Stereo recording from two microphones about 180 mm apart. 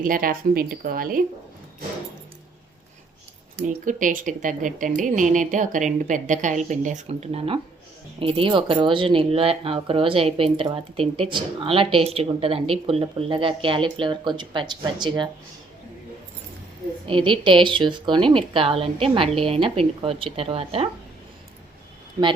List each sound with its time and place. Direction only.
0.0 s a woman's voice: 50° right (ahead or behind)
3.8 s a woman's voice: 45° right (ahead or behind); by 15.3 s 25° right (ahead or behind)
17.1 s speech: 30° right (ahead or behind)